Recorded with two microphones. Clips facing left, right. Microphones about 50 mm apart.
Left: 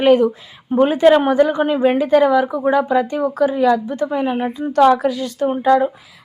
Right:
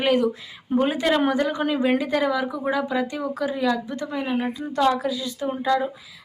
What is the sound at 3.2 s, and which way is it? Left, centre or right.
Speech, left.